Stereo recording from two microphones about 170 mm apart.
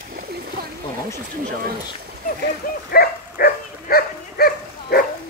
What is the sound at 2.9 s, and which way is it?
Dog, 60° left (ahead or behind).